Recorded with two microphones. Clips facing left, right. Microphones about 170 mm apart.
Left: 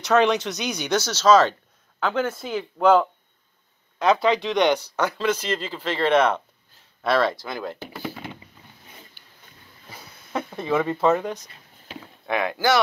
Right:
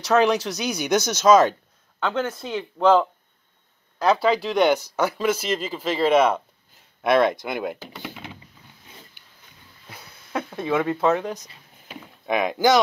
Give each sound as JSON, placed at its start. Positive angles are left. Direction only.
{"t": 0.0, "sound": "speech", "side_deg": -5}
{"t": 2.0, "sound": "speech", "side_deg": 5}
{"t": 9.8, "sound": "a sound", "side_deg": 0}
{"t": 11.9, "sound": "rowboat", "side_deg": -15}